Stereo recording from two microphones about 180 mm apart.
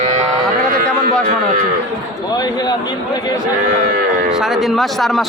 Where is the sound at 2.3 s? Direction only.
20° left (ahead or behind).